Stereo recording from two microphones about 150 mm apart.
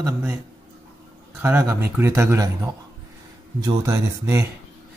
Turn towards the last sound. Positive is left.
turn(degrees=-20)  # may be behind; listen again after turning